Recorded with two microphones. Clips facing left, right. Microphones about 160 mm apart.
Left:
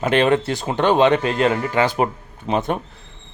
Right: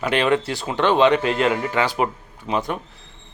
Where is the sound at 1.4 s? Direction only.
35° left (ahead or behind).